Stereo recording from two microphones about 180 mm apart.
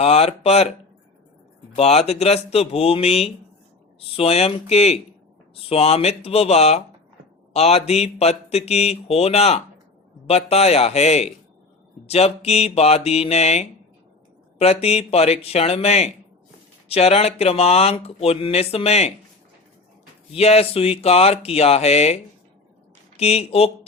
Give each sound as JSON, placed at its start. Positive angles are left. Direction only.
{"t": 0.0, "sound": "speech", "side_deg": 35}
{"t": 1.7, "sound": "speech", "side_deg": 35}
{"t": 20.3, "sound": "speech", "side_deg": 35}